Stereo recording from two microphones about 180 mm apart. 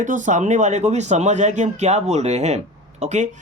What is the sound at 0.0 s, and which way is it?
Speech, 45° right (ahead or behind).